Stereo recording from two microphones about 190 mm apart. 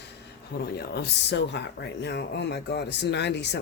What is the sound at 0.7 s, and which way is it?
Speech, 55° left (ahead or behind).